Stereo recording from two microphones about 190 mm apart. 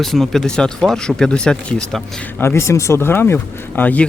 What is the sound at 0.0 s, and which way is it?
Speech, centre (ahead or behind).